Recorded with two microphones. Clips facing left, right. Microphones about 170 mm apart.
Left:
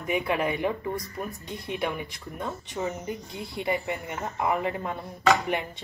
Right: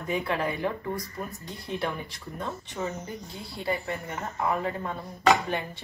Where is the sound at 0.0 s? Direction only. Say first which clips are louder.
Left 2 dB; 15° left (ahead or behind).